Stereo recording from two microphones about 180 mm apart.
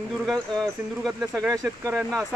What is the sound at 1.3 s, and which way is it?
Speech, 15° right (ahead or behind).